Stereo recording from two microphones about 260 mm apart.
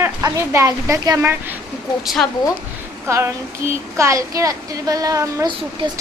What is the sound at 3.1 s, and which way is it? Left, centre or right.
Speech, centre.